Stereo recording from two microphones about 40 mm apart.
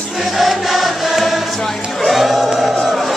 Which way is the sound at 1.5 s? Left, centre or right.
Centre.